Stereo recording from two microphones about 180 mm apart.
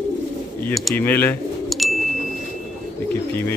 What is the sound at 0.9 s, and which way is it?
Speech, 10° left (ahead or behind).